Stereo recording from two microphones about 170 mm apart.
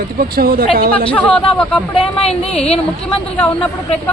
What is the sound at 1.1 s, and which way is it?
Speech, 5° left (ahead or behind).